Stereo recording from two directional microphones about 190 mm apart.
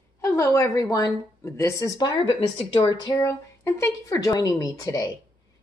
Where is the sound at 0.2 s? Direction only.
15° left (ahead or behind).